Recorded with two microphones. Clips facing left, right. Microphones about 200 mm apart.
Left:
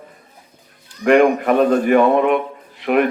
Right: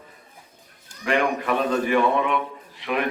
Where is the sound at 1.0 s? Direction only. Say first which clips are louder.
Left 10 dB; 50° left (ahead or behind).